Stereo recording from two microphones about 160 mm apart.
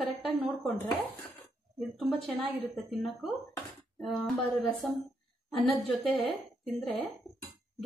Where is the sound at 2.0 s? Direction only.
Centre (ahead or behind).